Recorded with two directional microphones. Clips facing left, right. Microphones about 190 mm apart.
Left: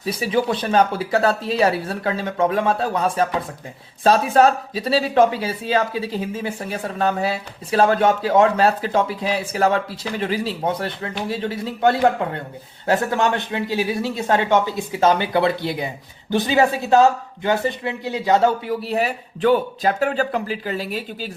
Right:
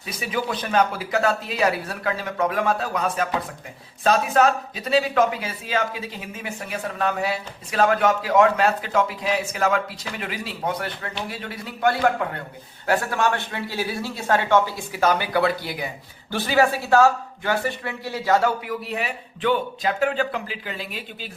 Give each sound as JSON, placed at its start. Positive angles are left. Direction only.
{"t": 0.0, "sound": "speech", "side_deg": 30}